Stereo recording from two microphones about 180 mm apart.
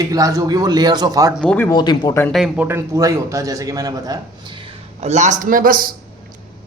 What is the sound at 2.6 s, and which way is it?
Speech, 15° right (ahead or behind).